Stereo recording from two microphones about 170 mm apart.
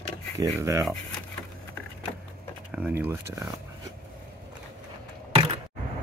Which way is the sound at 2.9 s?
15° right (ahead or behind).